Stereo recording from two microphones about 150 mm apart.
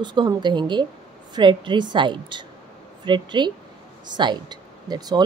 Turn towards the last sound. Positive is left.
turn(degrees=-30)  # may be behind; listen again after turning